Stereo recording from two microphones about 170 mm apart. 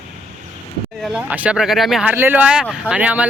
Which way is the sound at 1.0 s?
Centre (ahead or behind).